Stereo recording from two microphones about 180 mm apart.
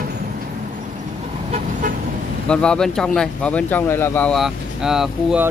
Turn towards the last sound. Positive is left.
turn(degrees=-5)  # may be behind; listen again after turning